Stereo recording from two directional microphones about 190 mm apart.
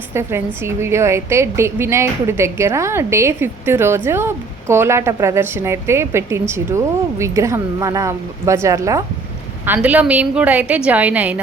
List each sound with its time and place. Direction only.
0.1 s a woman's voice: 15° right (ahead or behind)